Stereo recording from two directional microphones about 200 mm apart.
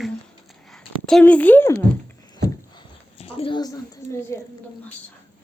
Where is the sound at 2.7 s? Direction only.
30° left (ahead or behind).